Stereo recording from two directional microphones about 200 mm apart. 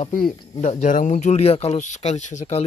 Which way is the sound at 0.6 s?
40° left (ahead or behind).